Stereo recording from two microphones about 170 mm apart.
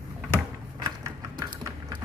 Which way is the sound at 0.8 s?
25° right (ahead or behind).